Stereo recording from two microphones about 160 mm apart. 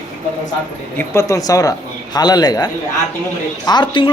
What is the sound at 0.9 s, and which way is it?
Speech, 20° left (ahead or behind).